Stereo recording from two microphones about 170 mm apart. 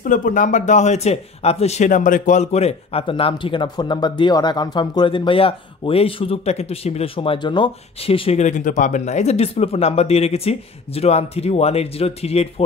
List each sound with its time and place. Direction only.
0.0 s speech: 50° left (ahead or behind)